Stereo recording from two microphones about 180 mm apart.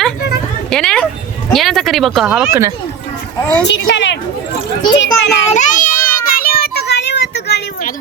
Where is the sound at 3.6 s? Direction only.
80° left.